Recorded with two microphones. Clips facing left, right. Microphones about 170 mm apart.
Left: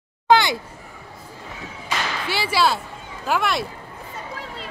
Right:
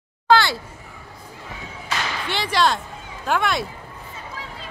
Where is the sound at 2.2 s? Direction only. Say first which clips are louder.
Even; 5° left (ahead or behind).